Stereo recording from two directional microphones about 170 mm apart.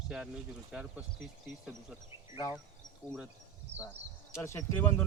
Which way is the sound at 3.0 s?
5° right (ahead or behind).